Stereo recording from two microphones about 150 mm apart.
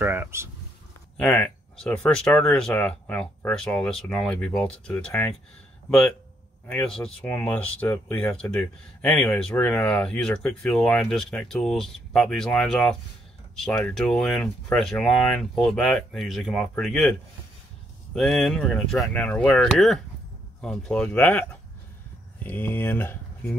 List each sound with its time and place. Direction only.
0.0 s a sound: 15° right (ahead or behind)
1.1 s speech: 5° left (ahead or behind)
6.7 s speech: 5° left (ahead or behind)
18.1 s speech: centre (ahead or behind)